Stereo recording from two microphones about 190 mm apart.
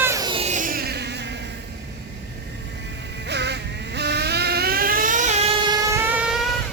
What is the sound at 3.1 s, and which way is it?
Vehicle, 65° right (ahead or behind).